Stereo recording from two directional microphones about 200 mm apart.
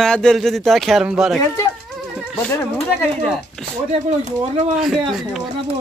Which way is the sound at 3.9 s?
30° right (ahead or behind).